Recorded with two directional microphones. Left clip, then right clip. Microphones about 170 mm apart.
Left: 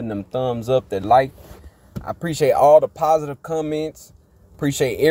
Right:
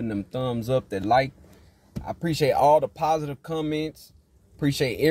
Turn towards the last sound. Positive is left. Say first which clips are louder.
# left 5 dB
turn(degrees=-15)  # may be behind; listen again after turning